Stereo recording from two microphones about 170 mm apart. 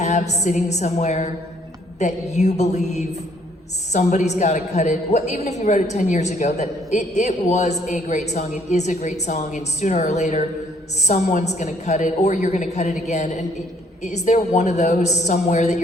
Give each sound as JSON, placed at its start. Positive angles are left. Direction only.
{"t": 0.0, "sound": "a woman's voice", "side_deg": 40}